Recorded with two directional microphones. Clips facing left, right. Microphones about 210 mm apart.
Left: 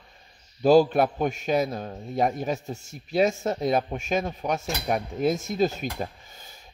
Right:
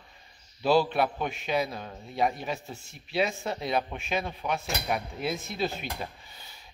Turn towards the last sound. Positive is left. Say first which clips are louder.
# left 2 dB
turn(degrees=45)  # may be behind; listen again after turning